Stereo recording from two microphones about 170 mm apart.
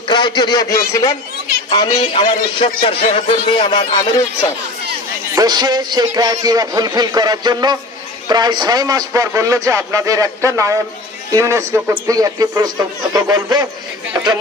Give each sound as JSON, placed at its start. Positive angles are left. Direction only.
{"t": 0.1, "sound": "a man's voice", "side_deg": 25}
{"t": 5.3, "sound": "speech", "side_deg": -20}